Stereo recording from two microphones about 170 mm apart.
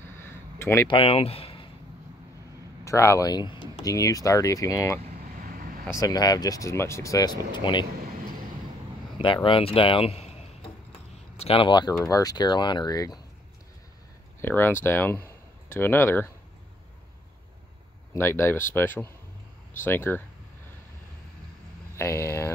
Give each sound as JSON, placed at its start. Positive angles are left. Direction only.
{"t": 0.0, "sound": "a sound", "side_deg": 15}
{"t": 0.8, "sound": "speech", "side_deg": 30}
{"t": 2.8, "sound": "speech", "side_deg": 15}
{"t": 9.2, "sound": "speech", "side_deg": 30}
{"t": 14.4, "sound": "speech", "side_deg": 10}
{"t": 18.1, "sound": "speech", "side_deg": 15}
{"t": 21.9, "sound": "speech", "side_deg": 15}